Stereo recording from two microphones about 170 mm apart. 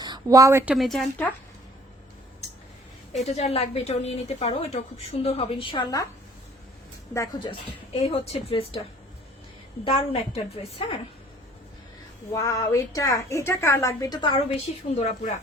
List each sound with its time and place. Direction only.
0.0 s a sound: 25° right (ahead or behind)
0.6 s a woman's voice: 5° right (ahead or behind)
3.2 s a woman's voice: 40° left (ahead or behind); by 6.1 s 25° left (ahead or behind)
7.1 s a woman's voice: 20° left (ahead or behind)
7.9 s a woman's voice: 35° left (ahead or behind)
9.8 s a woman's voice: 35° left (ahead or behind)
12.3 s a woman's voice: 20° left (ahead or behind)
14.8 s a woman's voice: 40° left (ahead or behind)